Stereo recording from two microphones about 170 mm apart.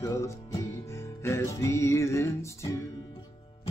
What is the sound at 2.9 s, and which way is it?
Music, 30° left (ahead or behind).